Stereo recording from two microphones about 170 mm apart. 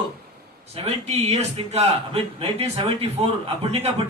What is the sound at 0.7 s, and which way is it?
A man's voice, 35° right (ahead or behind).